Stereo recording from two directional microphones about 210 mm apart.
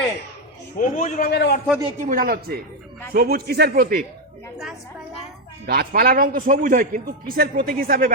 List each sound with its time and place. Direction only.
0.8 s a man's voice: 40° left (ahead or behind)
2.0 s a man's voice: 40° right (ahead or behind)
5.6 s a man's voice: 45° right (ahead or behind)